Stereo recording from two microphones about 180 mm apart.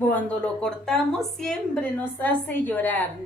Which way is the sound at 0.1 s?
5° left (ahead or behind).